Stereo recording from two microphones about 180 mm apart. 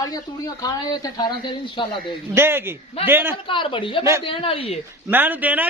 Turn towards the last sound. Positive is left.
turn(degrees=-10)  # may be behind; listen again after turning